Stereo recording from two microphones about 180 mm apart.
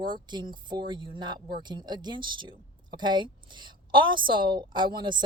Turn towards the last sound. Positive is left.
turn(degrees=-25)  # may be behind; listen again after turning